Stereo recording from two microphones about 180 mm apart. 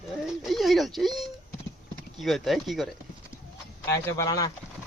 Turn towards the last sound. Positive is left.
turn(degrees=20)  # may be behind; listen again after turning